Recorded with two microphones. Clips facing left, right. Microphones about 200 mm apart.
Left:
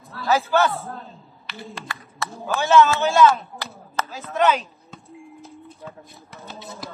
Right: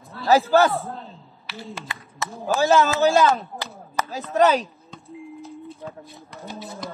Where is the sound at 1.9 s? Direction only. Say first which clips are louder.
Even; 20° right (ahead or behind).